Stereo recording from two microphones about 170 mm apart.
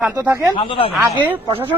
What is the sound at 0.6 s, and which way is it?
Speech, 30° left (ahead or behind).